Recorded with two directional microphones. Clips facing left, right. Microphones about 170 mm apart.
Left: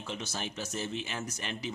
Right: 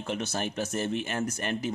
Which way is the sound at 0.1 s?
55° right (ahead or behind).